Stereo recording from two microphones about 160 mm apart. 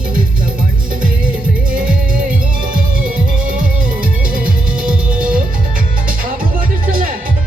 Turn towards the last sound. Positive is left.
turn(degrees=-60)  # may be behind; listen again after turning